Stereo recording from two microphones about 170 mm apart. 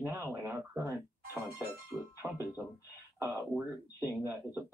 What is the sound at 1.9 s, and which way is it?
Music, 5° left (ahead or behind).